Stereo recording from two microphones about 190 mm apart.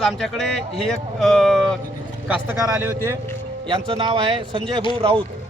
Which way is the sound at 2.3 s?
15° right (ahead or behind).